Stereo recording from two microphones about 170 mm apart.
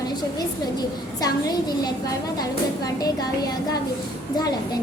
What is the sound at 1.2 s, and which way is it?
A woman's voice, 25° left (ahead or behind).